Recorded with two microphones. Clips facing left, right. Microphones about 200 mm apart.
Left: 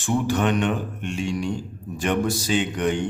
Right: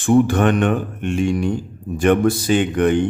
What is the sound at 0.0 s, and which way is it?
A man's voice, 55° right (ahead or behind).